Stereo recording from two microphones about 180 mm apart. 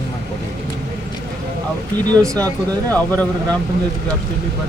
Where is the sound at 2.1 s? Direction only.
20° right (ahead or behind).